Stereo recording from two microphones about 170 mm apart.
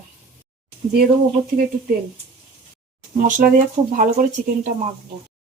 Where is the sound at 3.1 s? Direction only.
55° right (ahead or behind).